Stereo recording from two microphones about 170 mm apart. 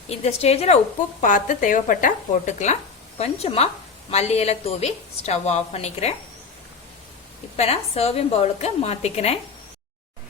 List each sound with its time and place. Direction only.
0.1 s a woman's voice: 40° left (ahead or behind)
1.2 s a woman's voice: 50° left (ahead or behind)
7.5 s a woman's voice: 35° left (ahead or behind)